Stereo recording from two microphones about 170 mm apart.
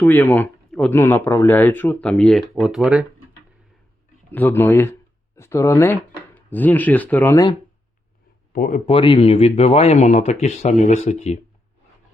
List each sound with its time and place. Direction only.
0.0 s speech: 10° left (ahead or behind); by 3.1 s 5° right (ahead or behind)
4.3 s speech: 10° left (ahead or behind)
8.5 s speech: 55° left (ahead or behind)
8.9 s speech: 30° left (ahead or behind)